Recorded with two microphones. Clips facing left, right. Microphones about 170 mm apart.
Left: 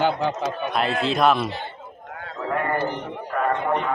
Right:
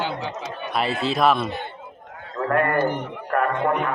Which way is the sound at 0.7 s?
Centre (ahead or behind).